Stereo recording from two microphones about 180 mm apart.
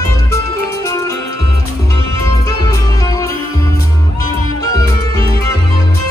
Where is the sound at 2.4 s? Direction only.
20° left (ahead or behind).